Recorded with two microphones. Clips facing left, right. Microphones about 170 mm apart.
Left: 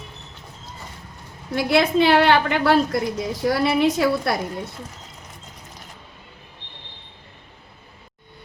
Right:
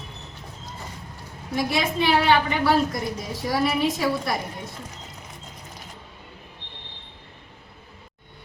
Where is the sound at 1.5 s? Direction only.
70° left (ahead or behind).